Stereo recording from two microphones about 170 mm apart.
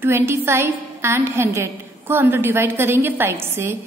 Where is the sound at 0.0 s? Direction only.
15° right (ahead or behind).